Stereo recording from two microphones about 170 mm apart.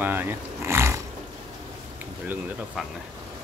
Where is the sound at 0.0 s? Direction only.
10° right (ahead or behind).